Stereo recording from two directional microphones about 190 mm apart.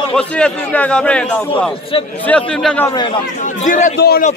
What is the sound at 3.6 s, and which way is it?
Speech, 40° left (ahead or behind).